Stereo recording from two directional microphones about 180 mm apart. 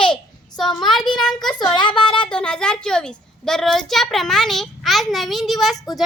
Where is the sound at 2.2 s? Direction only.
5° left (ahead or behind).